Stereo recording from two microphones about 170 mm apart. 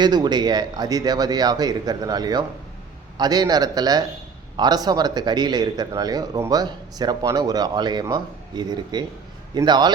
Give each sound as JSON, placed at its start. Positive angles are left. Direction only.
{"t": 0.0, "sound": "speech", "side_deg": -25}